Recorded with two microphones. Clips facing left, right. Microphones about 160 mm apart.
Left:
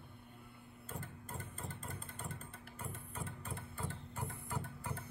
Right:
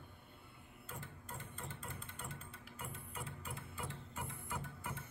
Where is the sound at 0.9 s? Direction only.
50° left (ahead or behind).